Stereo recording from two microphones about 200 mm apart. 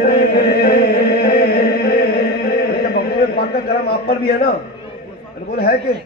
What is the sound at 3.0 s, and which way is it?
A man's voice, 50° left (ahead or behind).